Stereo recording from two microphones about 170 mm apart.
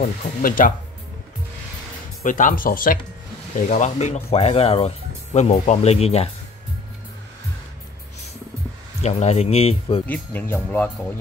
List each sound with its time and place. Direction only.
0.0 s speech: 55° left (ahead or behind)
2.2 s speech: 50° left (ahead or behind)
3.6 s speech: 45° left (ahead or behind)
9.0 s speech: 40° left (ahead or behind)
10.0 s speech: 10° left (ahead or behind)